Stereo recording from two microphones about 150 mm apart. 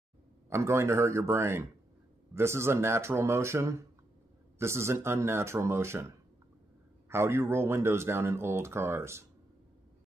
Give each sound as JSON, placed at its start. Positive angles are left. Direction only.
{"t": 0.5, "sound": "speech", "side_deg": -20}